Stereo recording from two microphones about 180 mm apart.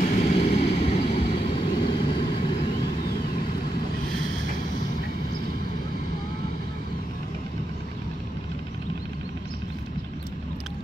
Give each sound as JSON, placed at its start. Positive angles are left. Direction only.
{"t": 0.0, "sound": "vehicle", "side_deg": 40}